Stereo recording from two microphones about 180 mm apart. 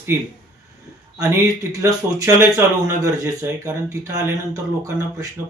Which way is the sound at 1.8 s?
20° right (ahead or behind).